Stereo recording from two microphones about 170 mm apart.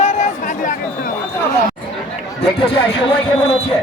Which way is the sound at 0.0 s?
45° left (ahead or behind).